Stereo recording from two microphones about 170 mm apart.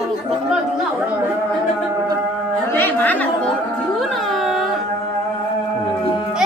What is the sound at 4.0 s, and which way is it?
Carnatic music, centre (ahead or behind).